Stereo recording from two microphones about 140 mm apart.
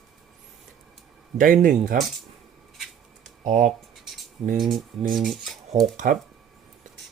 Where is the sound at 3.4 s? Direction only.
55° right (ahead or behind).